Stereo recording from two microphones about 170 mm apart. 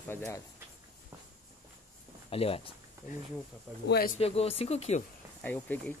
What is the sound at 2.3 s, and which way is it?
Speech, 35° left (ahead or behind).